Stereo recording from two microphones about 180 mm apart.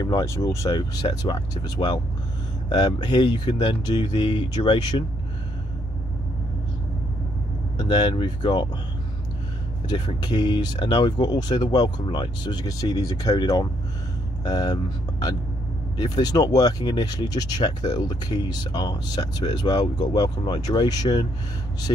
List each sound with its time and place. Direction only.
0.0 s speech: 20° left (ahead or behind)
7.7 s speech: 25° left (ahead or behind)
9.8 s speech: 25° left (ahead or behind)